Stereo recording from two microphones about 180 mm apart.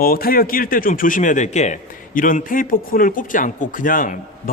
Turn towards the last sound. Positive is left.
turn(degrees=50)  # may be behind; listen again after turning